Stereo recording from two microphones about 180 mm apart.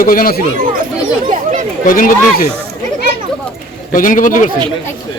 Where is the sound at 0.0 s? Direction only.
55° left (ahead or behind).